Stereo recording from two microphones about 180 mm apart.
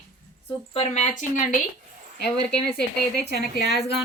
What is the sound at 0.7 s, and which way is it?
Speech, 40° left (ahead or behind).